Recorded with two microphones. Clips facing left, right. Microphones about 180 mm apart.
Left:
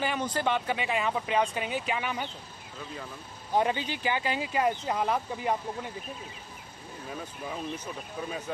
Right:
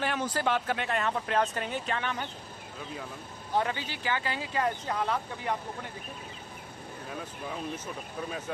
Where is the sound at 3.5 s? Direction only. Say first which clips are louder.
Left 3 dB; 20° left (ahead or behind).